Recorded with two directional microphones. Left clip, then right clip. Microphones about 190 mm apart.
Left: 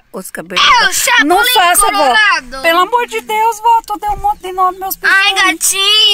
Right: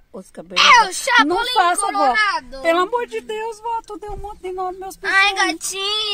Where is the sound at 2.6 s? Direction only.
Centre (ahead or behind).